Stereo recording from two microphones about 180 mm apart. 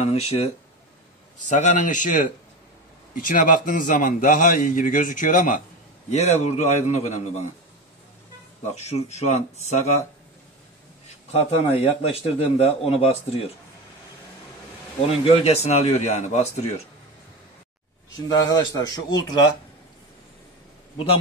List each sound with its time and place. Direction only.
0.0 s a man's voice: 35° left (ahead or behind)
1.5 s a man's voice: 45° left (ahead or behind)
8.7 s a man's voice: 35° left (ahead or behind)
11.3 s a man's voice: 35° left (ahead or behind)
15.0 s a man's voice: 35° left (ahead or behind)
18.3 s a man's voice: 20° left (ahead or behind)